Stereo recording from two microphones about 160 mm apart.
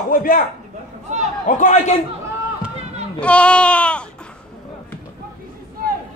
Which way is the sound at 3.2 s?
5° left (ahead or behind).